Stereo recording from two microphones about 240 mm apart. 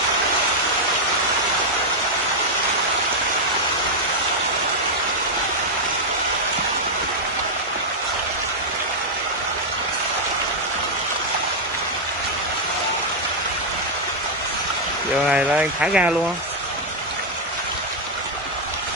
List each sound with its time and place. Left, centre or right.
15.2 s speech: centre